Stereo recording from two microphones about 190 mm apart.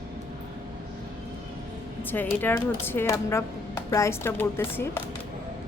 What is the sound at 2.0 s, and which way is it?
A woman's voice, 10° left (ahead or behind).